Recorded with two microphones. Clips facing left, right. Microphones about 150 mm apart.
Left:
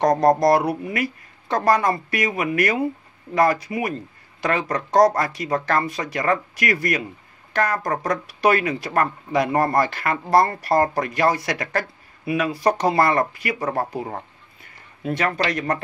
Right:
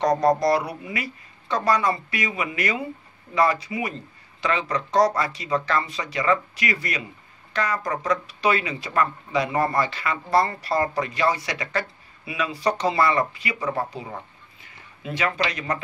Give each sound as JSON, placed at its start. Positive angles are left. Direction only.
{"t": 0.0, "sound": "speech", "side_deg": 50}